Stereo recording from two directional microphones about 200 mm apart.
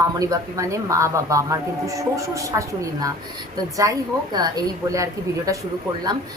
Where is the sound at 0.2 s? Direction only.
15° right (ahead or behind).